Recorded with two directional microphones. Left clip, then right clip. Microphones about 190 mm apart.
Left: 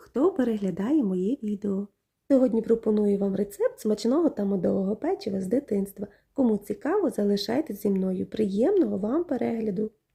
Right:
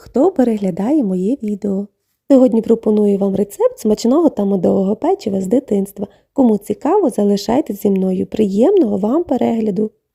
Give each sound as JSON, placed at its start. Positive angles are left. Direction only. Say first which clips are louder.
{"t": 0.1, "sound": "speech", "louder": "right 11 dB", "side_deg": -35}